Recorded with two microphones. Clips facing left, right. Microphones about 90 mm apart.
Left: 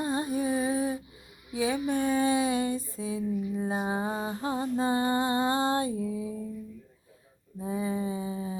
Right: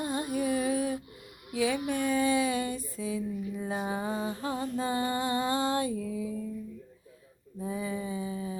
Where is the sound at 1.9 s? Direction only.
30° left (ahead or behind).